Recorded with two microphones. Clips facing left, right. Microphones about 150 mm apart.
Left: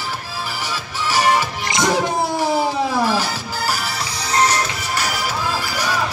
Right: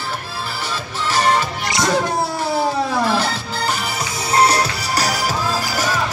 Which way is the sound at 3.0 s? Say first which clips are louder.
Right 2 dB; 10° left (ahead or behind).